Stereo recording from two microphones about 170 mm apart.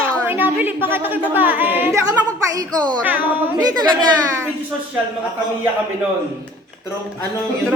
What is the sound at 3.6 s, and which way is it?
Speech, 25° right (ahead or behind).